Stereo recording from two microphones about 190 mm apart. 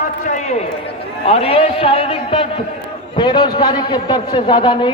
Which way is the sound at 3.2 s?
25° left (ahead or behind).